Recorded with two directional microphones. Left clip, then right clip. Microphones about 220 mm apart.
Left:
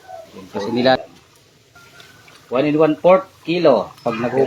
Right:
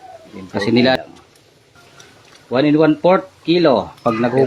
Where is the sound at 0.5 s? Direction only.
40° right (ahead or behind).